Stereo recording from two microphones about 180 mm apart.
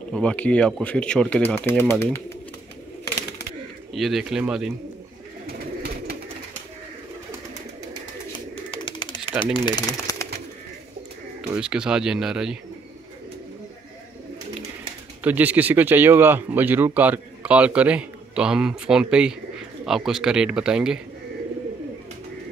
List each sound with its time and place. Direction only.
0.1 s speech: 5° left (ahead or behind)
3.9 s a man's voice: centre (ahead or behind)
8.6 s pigeon: 30° left (ahead or behind)
9.4 s speech: 25° left (ahead or behind)
11.5 s a man's voice: 5° right (ahead or behind)
15.2 s a man's voice: 10° right (ahead or behind)